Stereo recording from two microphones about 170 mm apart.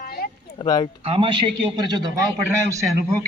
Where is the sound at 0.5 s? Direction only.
25° left (ahead or behind).